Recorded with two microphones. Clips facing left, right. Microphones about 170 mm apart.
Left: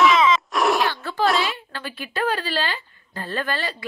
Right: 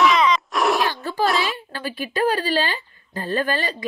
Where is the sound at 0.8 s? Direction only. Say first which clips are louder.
Right 1 dB; 15° right (ahead or behind).